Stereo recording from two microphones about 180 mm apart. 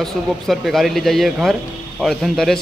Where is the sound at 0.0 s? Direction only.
Centre (ahead or behind).